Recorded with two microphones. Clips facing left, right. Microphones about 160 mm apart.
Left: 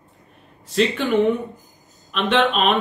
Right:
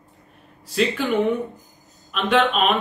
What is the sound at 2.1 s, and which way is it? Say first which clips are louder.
Speech: even; centre (ahead or behind).